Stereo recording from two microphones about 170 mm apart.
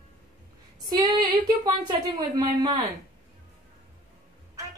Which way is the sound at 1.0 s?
25° right (ahead or behind).